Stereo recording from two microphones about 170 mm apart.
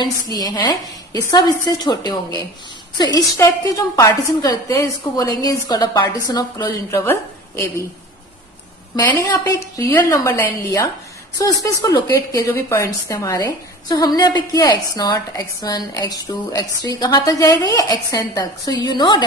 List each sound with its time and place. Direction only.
0.4 s a woman's voice: 25° left (ahead or behind)
9.4 s a woman's voice: 20° left (ahead or behind)